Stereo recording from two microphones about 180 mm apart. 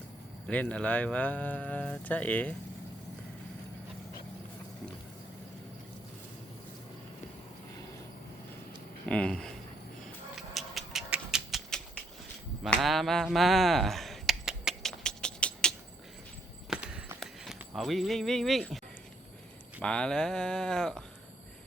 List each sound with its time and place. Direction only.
0.4 s speech: 5° left (ahead or behind)
9.0 s speech: 5° left (ahead or behind)
10.3 s a sound: centre (ahead or behind)
16.6 s clip-clop: 5° right (ahead or behind)
19.8 s speech: 5° left (ahead or behind)